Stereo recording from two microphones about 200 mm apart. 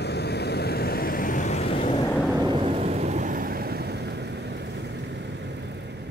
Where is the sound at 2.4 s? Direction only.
25° right (ahead or behind); by 4.6 s 60° right (ahead or behind).